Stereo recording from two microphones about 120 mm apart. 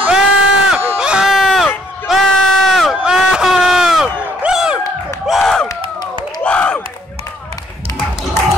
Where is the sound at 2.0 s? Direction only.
Centre (ahead or behind).